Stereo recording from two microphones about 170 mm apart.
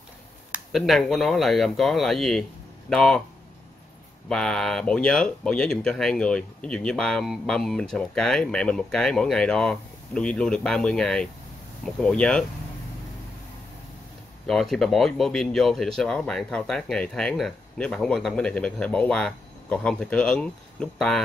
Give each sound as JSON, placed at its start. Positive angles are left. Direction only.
{"t": 0.5, "sound": "speech", "side_deg": 0}
{"t": 4.3, "sound": "speech", "side_deg": 5}
{"t": 14.5, "sound": "speech", "side_deg": 0}